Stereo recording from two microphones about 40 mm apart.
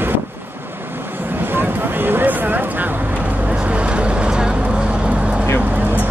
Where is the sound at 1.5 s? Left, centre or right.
Right.